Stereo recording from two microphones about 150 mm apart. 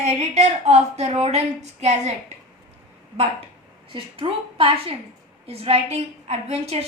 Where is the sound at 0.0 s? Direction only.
50° right (ahead or behind).